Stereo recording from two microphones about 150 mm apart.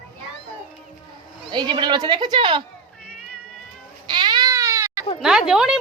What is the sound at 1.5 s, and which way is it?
Speech, 30° right (ahead or behind).